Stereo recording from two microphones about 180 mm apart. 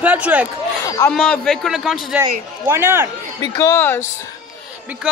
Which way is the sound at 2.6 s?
10° right (ahead or behind).